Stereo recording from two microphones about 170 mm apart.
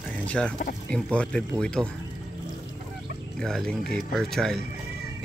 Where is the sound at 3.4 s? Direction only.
5° left (ahead or behind).